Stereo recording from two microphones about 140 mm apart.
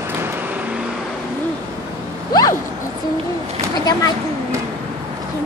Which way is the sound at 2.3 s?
25° left (ahead or behind).